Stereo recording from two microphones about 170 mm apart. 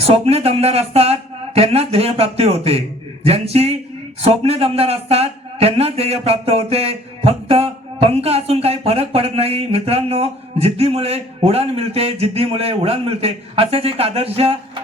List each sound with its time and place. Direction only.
0.0 s a man's voice: 35° right (ahead or behind)